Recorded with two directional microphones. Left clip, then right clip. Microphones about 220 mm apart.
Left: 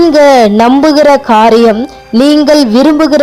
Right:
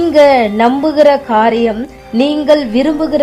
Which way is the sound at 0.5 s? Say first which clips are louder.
Left 5 dB; 25° left (ahead or behind).